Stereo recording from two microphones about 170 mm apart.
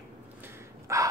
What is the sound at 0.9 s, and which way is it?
Crow, 20° right (ahead or behind).